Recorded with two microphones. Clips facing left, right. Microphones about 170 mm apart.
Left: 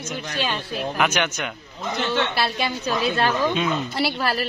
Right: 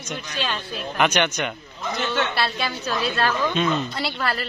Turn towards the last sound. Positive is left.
turn(degrees=10)  # may be behind; listen again after turning